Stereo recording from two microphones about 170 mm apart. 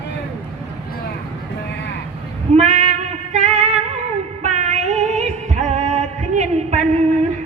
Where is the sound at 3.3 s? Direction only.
45° right (ahead or behind).